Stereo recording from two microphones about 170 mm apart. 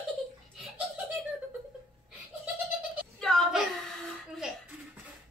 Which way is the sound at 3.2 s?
5° left (ahead or behind).